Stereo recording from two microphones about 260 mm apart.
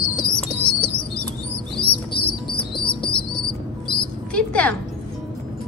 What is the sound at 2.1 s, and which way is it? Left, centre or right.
Music, left.